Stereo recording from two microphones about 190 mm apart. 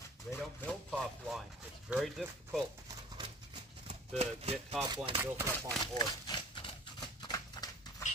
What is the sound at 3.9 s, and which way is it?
Speech, 35° right (ahead or behind).